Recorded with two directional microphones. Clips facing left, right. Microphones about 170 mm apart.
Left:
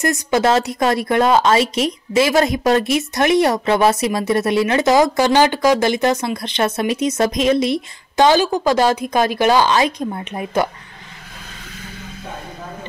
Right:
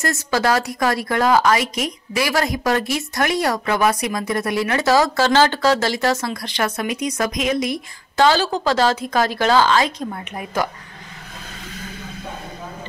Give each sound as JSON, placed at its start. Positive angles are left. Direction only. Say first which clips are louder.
{"t": 0.0, "sound": "speech", "louder": "left 4 dB", "side_deg": 20}